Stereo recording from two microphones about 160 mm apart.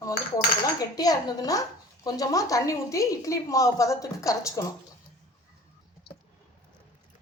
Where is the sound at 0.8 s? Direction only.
25° left (ahead or behind).